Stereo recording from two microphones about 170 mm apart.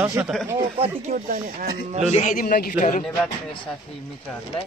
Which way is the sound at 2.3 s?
55° left (ahead or behind).